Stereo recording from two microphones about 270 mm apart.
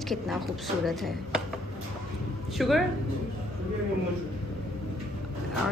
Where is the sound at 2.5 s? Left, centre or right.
Centre.